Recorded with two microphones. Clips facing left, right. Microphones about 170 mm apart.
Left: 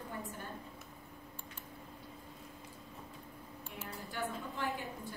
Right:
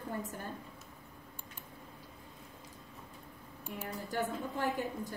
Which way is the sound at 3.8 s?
40° right (ahead or behind).